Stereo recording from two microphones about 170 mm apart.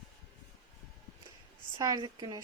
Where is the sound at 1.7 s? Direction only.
25° right (ahead or behind).